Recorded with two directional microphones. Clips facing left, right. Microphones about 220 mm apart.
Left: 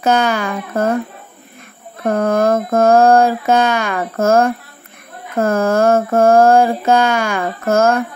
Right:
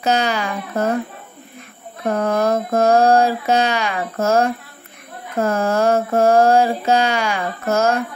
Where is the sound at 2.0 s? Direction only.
50° left (ahead or behind).